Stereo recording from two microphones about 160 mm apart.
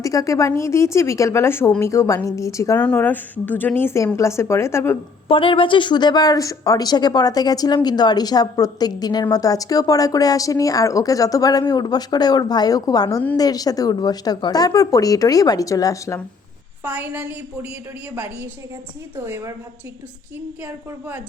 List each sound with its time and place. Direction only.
0.0 s a woman's voice: 20° left (ahead or behind)
5.3 s speech: 35° left (ahead or behind)
16.8 s a woman's voice: 10° right (ahead or behind)